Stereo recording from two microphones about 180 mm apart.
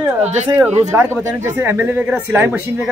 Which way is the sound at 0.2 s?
40° right (ahead or behind).